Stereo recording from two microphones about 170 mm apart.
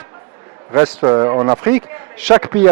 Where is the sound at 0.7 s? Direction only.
20° right (ahead or behind).